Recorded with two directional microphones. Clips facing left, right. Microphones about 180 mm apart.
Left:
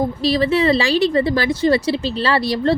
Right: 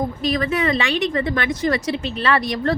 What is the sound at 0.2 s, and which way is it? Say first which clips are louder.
Speech: left 5 dB; 30° left (ahead or behind).